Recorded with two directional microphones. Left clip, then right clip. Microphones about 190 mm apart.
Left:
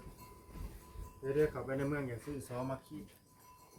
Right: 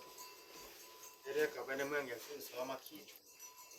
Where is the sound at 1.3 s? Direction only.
45° left (ahead or behind).